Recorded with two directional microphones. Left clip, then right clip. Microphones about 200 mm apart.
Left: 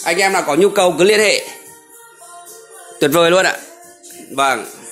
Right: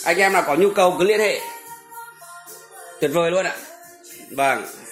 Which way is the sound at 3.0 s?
55° left (ahead or behind).